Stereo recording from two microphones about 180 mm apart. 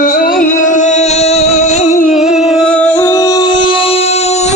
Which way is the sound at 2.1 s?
Centre (ahead or behind).